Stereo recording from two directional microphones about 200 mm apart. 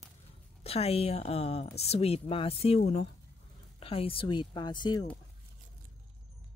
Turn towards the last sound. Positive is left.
turn(degrees=20)  # may be behind; listen again after turning